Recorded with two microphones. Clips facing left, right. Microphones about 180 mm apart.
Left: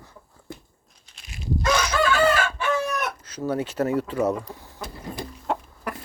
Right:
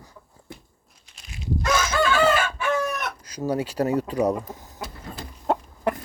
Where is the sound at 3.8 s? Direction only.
25° right (ahead or behind).